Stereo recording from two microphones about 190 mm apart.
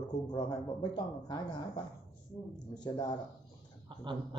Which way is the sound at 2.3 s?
5° left (ahead or behind).